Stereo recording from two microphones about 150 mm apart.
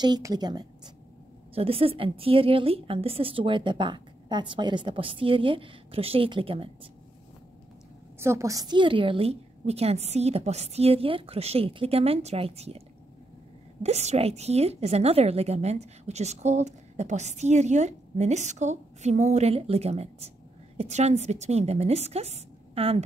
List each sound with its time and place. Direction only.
0.0 s a woman's voice: 25° right (ahead or behind)
1.5 s a woman's voice: 40° right (ahead or behind)
8.2 s a woman's voice: 20° right (ahead or behind); by 12.8 s 45° right (ahead or behind)
13.8 s a woman's voice: 45° right (ahead or behind)